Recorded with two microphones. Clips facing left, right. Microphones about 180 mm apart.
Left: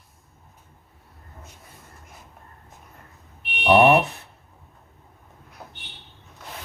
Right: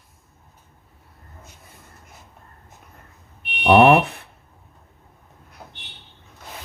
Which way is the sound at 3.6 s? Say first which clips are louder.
Right 3 dB; 55° right (ahead or behind).